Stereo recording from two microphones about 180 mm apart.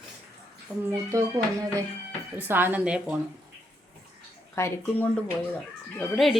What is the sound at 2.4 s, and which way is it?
Speech, 10° right (ahead or behind).